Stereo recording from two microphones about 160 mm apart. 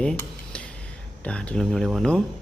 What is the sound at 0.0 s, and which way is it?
Dishes, 5° left (ahead or behind).